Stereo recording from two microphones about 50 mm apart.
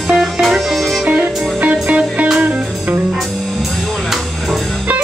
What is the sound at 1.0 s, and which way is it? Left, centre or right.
Music, right.